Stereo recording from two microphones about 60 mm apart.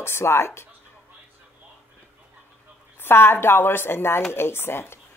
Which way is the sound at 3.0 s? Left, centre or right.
Left.